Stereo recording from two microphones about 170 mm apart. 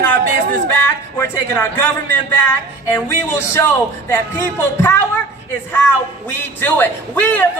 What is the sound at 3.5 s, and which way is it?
A man's voice, 15° left (ahead or behind).